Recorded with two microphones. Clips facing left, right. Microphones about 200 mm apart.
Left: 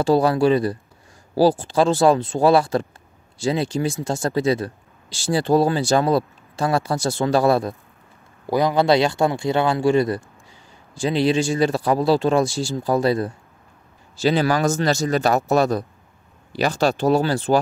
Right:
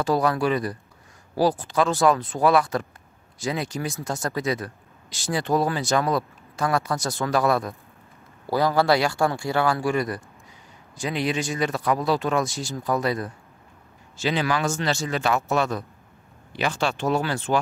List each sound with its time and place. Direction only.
0.0 s speech: 30° left (ahead or behind)
8.5 s speech: 20° left (ahead or behind); by 17.6 s 35° left (ahead or behind)